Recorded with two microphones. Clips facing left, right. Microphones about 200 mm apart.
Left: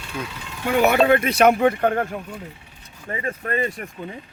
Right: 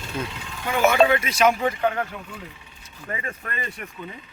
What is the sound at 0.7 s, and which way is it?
Speech, 65° left (ahead or behind).